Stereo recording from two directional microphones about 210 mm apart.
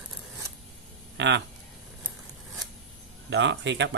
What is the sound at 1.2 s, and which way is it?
Speech, 60° right (ahead or behind).